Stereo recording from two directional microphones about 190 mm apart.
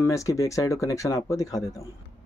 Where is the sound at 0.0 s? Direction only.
15° left (ahead or behind).